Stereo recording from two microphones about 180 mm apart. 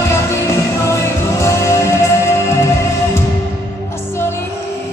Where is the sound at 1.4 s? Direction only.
15° left (ahead or behind).